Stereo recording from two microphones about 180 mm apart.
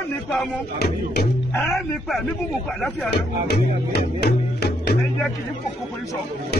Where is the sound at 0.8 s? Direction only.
65° left (ahead or behind).